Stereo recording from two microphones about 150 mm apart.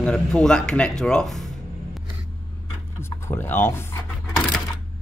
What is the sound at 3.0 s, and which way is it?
Speech, 15° left (ahead or behind).